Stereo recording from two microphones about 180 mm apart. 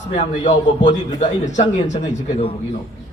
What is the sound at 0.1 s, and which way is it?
A man's voice, 40° left (ahead or behind).